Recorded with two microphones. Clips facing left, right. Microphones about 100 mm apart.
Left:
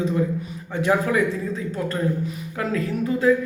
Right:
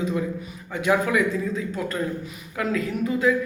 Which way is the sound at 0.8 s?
35° left (ahead or behind).